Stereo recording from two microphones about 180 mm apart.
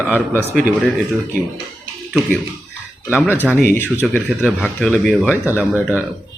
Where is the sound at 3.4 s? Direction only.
10° left (ahead or behind); by 6.0 s 10° right (ahead or behind).